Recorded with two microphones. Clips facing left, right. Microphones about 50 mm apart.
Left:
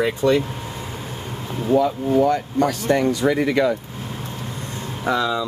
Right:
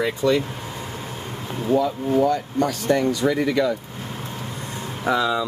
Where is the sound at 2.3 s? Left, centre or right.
Left.